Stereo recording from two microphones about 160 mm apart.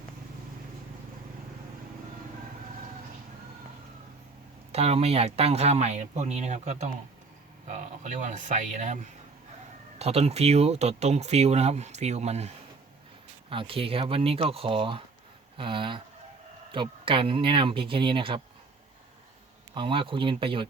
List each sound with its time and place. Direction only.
4.7 s speech: 40° right (ahead or behind)
10.0 s speech: 40° right (ahead or behind)
13.5 s speech: 35° right (ahead or behind)
19.7 s speech: 30° right (ahead or behind)